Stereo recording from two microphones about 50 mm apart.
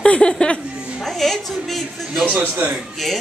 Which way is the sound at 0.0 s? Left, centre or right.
Centre.